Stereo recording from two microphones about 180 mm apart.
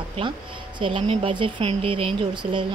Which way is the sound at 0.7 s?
25° right (ahead or behind).